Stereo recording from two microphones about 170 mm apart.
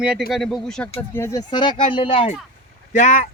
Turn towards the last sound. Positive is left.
turn(degrees=50)  # may be behind; listen again after turning